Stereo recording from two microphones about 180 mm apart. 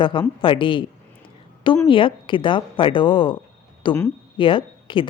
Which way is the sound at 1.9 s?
30° left (ahead or behind).